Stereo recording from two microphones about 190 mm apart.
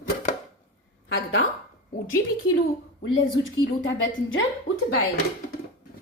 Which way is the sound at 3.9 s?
90° left.